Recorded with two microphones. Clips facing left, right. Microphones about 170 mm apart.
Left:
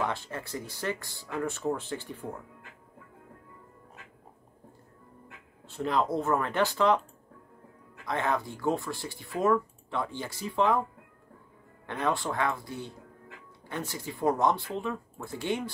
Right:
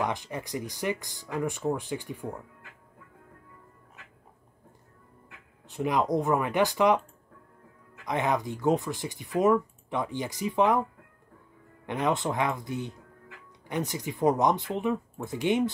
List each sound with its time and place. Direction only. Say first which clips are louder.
0.0 s speech: right 2 dB; 15° right (ahead or behind)
5.7 s speech: right 2 dB; 15° right (ahead or behind)
8.0 s speech: right 2 dB; 15° right (ahead or behind)
11.8 s speech: right 3 dB; 15° right (ahead or behind)